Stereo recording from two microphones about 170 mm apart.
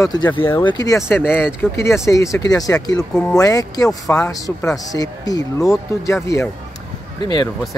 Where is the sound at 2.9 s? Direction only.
5° left (ahead or behind).